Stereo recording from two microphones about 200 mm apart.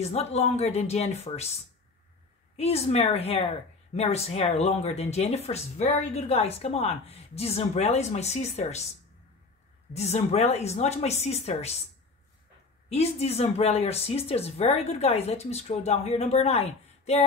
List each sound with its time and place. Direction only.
0.0 s speech: 30° left (ahead or behind)
2.5 s speech: 30° left (ahead or behind)
9.9 s speech: 35° left (ahead or behind)
12.9 s speech: 30° left (ahead or behind)